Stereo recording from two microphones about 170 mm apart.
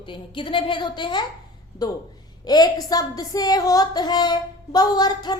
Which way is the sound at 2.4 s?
25° left (ahead or behind).